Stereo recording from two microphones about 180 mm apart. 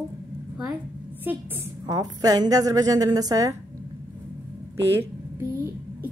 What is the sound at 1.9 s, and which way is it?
A woman's voice, 20° right (ahead or behind).